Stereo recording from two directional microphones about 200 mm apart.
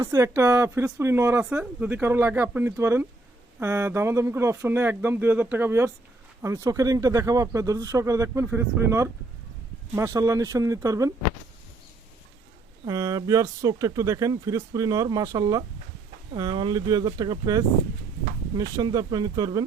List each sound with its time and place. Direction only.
0.0 s speech: 15° right (ahead or behind)
12.8 s speech: 15° right (ahead or behind)